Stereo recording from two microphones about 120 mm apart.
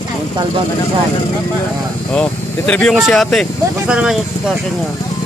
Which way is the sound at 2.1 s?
10° left (ahead or behind).